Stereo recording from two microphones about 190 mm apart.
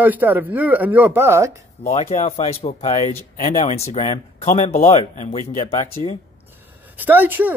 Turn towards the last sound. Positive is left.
turn(degrees=-10)  # may be behind; listen again after turning